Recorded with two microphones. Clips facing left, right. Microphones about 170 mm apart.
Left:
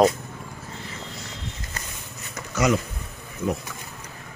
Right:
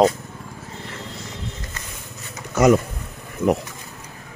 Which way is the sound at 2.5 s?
50° right (ahead or behind).